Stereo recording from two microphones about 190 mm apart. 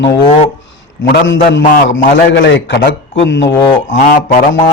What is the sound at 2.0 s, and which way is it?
A man's voice, 65° left (ahead or behind).